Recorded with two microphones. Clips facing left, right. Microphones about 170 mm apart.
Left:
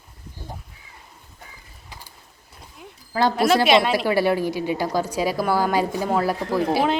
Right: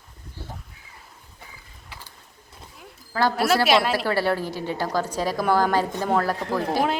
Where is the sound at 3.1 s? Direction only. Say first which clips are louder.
Left 2 dB; 15° left (ahead or behind).